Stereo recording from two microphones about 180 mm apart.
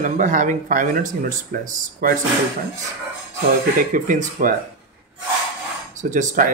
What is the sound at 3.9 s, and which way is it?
Speech, 45° right (ahead or behind).